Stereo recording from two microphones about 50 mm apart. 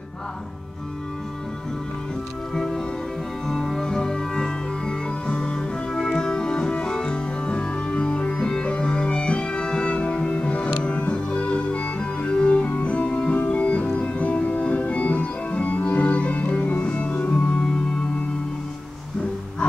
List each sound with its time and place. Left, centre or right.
2.5 s music: centre; by 13.8 s left
13.9 s organ: left